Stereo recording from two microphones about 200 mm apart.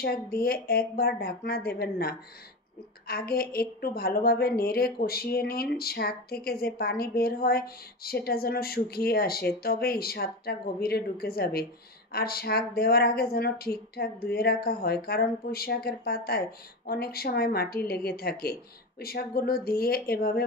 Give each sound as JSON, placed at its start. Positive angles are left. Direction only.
{"t": 0.0, "sound": "a woman's voice", "side_deg": 50}